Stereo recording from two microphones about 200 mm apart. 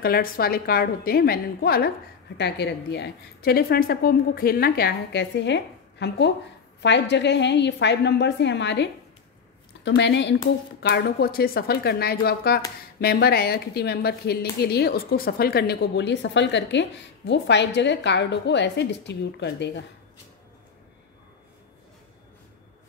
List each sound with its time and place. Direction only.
0.0 s a woman's voice: 50° left (ahead or behind)